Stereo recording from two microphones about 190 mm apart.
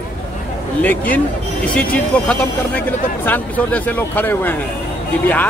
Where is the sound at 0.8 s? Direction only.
10° left (ahead or behind).